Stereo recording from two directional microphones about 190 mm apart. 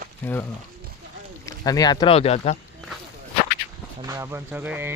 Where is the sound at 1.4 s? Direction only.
20° left (ahead or behind).